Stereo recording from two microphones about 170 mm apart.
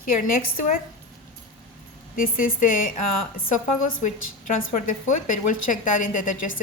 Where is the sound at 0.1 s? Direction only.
55° left (ahead or behind).